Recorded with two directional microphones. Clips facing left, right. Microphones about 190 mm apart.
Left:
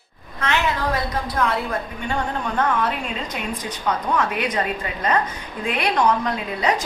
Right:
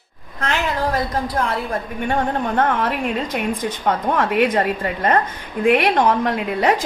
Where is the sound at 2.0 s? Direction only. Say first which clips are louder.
Right 7 dB; 55° right (ahead or behind).